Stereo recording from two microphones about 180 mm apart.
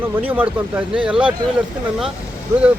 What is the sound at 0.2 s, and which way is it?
Speech, 10° right (ahead or behind).